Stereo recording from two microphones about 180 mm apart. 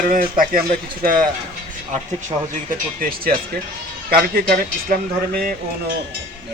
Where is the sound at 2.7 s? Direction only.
55° right (ahead or behind).